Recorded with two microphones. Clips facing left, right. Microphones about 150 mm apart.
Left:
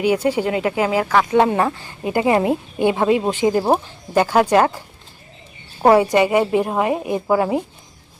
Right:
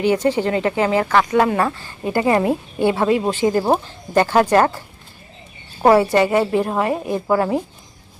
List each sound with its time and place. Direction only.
0.0 s a woman's voice: 10° left (ahead or behind)
1.3 s a woman's voice: 25° left (ahead or behind)
5.8 s a woman's voice: 15° left (ahead or behind)